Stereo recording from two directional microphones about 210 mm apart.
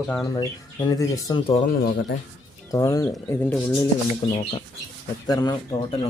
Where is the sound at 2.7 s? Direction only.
15° left (ahead or behind).